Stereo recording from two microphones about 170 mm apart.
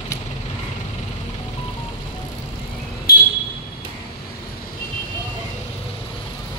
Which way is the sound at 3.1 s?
65° left (ahead or behind).